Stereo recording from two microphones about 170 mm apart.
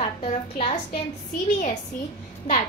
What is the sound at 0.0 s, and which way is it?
A woman's voice, 35° left (ahead or behind).